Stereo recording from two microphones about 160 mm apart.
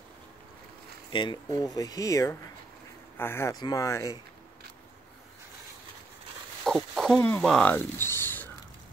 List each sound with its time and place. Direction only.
1.1 s speech: 30° left (ahead or behind)
6.6 s speech: centre (ahead or behind)